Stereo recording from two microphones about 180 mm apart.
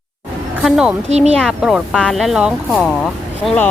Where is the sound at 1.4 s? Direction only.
Centre (ahead or behind).